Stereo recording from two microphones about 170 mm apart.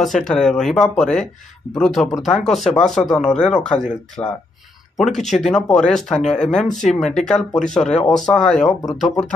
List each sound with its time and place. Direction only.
0.0 s speech: centre (ahead or behind)
4.2 s speech: 20° left (ahead or behind)
4.9 s speech: centre (ahead or behind)
5.2 s speech: 45° left (ahead or behind)
5.5 s speech: 5° left (ahead or behind)